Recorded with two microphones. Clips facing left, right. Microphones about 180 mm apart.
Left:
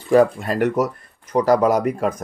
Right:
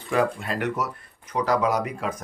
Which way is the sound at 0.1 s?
40° left (ahead or behind).